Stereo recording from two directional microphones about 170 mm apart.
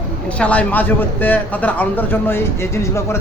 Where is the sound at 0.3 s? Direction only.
5° left (ahead or behind).